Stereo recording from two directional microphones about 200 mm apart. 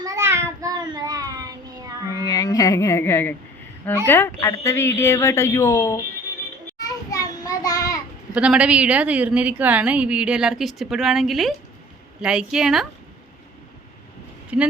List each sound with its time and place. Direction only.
0.0 s child singing: 15° right (ahead or behind)
2.2 s speech: 15° left (ahead or behind)
6.7 s a sound: 15° left (ahead or behind)
8.3 s a woman's voice: 5° right (ahead or behind)
14.5 s speech: 5° right (ahead or behind)